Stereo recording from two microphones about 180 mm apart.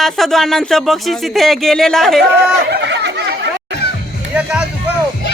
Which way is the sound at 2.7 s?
70° right (ahead or behind).